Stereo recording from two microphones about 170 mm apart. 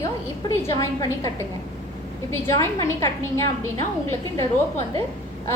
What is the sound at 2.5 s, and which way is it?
A woman's voice, 15° left (ahead or behind).